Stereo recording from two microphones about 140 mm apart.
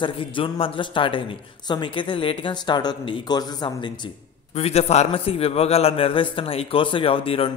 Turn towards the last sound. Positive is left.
turn(degrees=40)  # may be behind; listen again after turning